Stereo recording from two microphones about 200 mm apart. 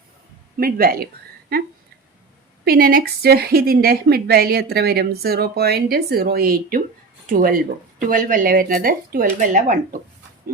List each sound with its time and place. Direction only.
0.6 s a woman's voice: 50° right (ahead or behind)
2.6 s a woman's voice: 50° right (ahead or behind)